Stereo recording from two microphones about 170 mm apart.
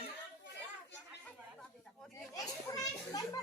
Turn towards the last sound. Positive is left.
turn(degrees=20)  # may be behind; listen again after turning